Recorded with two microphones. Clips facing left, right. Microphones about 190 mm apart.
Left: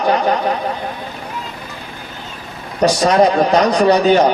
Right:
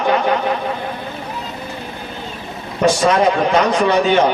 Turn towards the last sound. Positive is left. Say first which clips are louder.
# left 3 dB
turn(degrees=40)  # may be behind; listen again after turning